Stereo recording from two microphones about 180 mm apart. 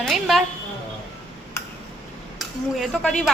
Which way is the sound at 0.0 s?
Centre (ahead or behind).